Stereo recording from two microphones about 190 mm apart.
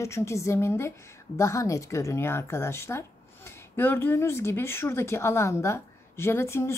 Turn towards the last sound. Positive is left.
turn(degrees=15)  # may be behind; listen again after turning